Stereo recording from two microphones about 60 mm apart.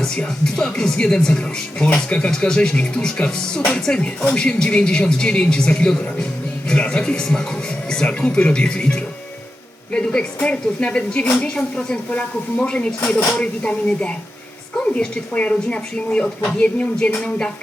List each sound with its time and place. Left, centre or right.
0.2 s speech: centre